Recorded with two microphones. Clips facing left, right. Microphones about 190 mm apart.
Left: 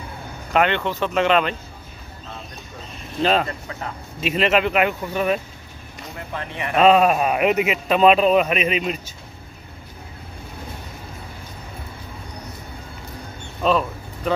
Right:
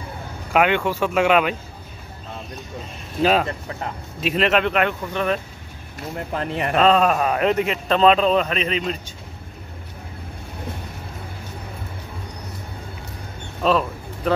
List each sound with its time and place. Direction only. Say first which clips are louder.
0.5 s speech: right 1 dB; 5° right (ahead or behind)
3.2 s speech: right 1 dB; 5° right (ahead or behind)
6.1 s speech: right 5 dB; 40° right (ahead or behind)
6.8 s speech: left 2 dB; 10° left (ahead or behind)
13.6 s a sound: even; centre (ahead or behind)